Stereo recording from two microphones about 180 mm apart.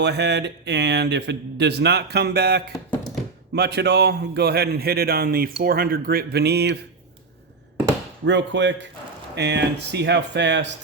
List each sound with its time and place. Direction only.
0.0 s speech: 70° right (ahead or behind)
8.2 s speech: 75° right (ahead or behind)